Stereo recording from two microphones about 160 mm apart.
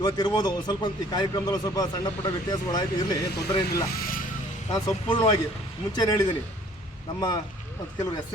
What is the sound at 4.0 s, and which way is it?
Vehicle, 60° left (ahead or behind).